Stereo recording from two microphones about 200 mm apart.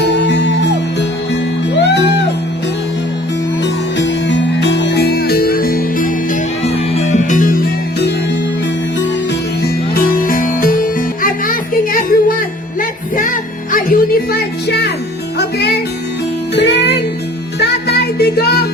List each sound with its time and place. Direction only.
0.0 s music: 60° left (ahead or behind)
1.8 s music: 60° left (ahead or behind)
3.6 s music: 65° left (ahead or behind); by 6.1 s 45° left (ahead or behind)
6.9 s music: 35° left (ahead or behind); by 8.1 s 50° left (ahead or behind)
9.9 s music: 45° left (ahead or behind)